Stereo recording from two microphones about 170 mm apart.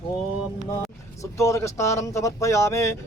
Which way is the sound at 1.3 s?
15° left (ahead or behind).